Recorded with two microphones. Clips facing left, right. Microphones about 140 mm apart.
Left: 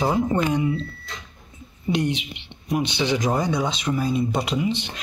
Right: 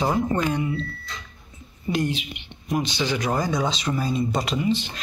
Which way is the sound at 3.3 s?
Centre (ahead or behind).